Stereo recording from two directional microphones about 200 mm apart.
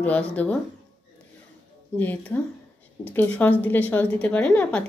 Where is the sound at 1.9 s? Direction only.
5° left (ahead or behind).